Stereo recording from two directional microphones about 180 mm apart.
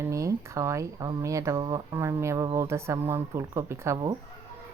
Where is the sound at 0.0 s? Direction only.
15° right (ahead or behind).